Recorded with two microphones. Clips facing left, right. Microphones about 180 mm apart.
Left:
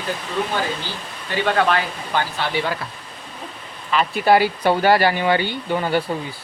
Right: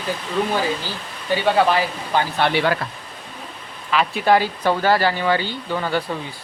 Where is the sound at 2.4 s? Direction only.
65° right (ahead or behind).